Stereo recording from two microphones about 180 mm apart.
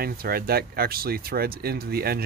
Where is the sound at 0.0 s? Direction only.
55° right (ahead or behind).